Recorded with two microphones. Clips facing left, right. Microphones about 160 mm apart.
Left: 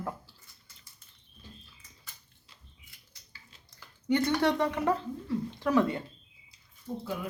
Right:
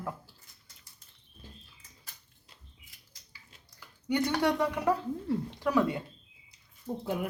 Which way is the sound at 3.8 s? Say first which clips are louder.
Left 2 dB; 15° right (ahead or behind).